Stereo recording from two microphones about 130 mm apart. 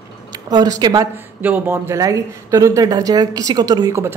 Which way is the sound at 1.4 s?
15° right (ahead or behind).